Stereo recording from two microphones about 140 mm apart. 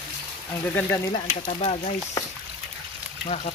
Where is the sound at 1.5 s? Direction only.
50° left (ahead or behind).